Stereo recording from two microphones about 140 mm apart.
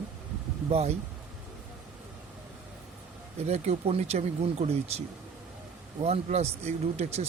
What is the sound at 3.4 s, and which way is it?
Speech, 50° right (ahead or behind).